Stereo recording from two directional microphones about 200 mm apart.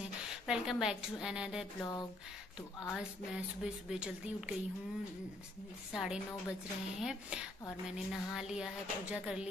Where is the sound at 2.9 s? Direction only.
5° right (ahead or behind).